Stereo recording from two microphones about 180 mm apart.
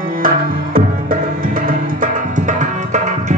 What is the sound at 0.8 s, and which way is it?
Music, 50° right (ahead or behind).